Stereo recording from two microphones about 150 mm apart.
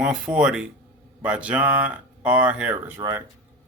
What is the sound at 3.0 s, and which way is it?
Speech, 20° right (ahead or behind).